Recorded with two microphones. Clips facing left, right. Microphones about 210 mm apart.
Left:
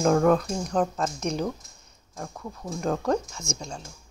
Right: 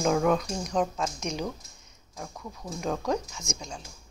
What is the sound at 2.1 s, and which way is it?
Speech, centre (ahead or behind).